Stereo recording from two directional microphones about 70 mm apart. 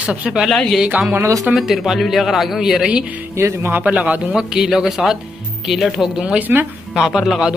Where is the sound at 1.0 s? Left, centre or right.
Right.